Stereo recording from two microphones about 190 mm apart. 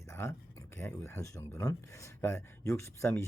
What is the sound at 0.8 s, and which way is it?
Speech, 15° left (ahead or behind).